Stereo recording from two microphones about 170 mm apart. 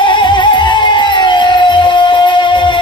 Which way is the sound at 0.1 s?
30° left (ahead or behind).